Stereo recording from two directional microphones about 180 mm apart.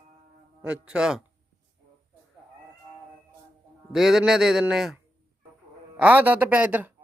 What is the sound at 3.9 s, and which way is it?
Speech, centre (ahead or behind).